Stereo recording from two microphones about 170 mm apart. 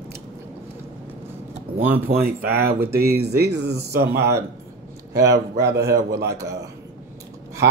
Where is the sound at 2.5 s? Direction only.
65° right (ahead or behind).